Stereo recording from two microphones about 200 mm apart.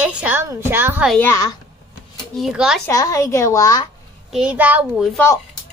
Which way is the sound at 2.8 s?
15° left (ahead or behind).